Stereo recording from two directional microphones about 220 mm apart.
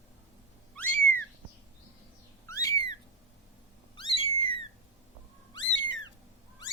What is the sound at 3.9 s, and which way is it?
Cat, 25° left (ahead or behind).